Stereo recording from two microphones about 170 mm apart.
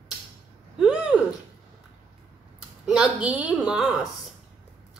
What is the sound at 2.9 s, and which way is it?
A woman's voice, 5° right (ahead or behind).